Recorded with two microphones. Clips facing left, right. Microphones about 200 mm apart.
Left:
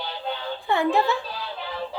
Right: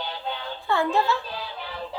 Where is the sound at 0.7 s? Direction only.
15° left (ahead or behind).